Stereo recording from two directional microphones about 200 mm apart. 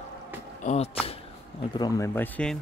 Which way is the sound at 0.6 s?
30° left (ahead or behind).